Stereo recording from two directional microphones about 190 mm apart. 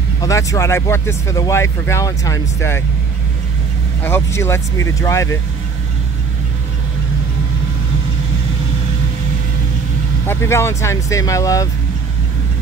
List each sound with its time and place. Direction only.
0.2 s speech: 15° left (ahead or behind)
4.0 s speech: 15° left (ahead or behind)
10.2 s speech: 10° left (ahead or behind)